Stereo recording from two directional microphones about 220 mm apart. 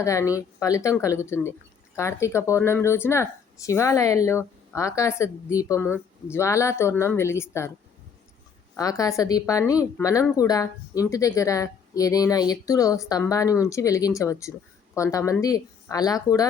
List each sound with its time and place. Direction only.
0.0 s a woman's voice: 15° left (ahead or behind)
8.7 s a woman's voice: 15° left (ahead or behind)